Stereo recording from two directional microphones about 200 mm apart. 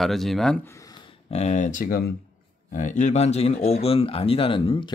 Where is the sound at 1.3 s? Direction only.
35° left (ahead or behind).